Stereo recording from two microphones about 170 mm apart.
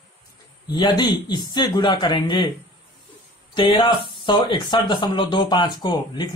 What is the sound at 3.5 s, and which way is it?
Speech, 30° left (ahead or behind).